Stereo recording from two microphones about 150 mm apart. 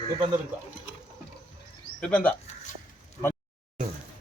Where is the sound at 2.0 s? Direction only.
5° left (ahead or behind).